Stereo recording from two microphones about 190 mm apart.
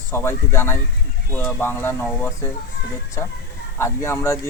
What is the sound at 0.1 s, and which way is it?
A man's voice, 15° left (ahead or behind).